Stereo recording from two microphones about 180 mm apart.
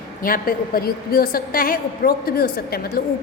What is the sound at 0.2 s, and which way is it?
A woman's voice, 50° left (ahead or behind).